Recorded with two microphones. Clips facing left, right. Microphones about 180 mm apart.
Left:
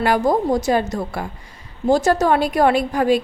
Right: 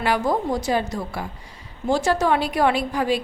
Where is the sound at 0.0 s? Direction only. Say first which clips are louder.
Left 4 dB; 45° left (ahead or behind).